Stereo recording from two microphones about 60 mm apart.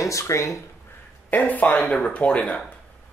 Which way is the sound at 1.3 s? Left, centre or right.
Left.